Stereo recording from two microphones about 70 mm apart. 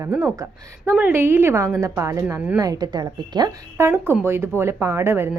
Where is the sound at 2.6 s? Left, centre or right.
Right.